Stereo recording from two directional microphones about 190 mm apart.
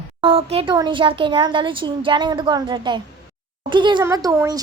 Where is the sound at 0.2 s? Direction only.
30° right (ahead or behind).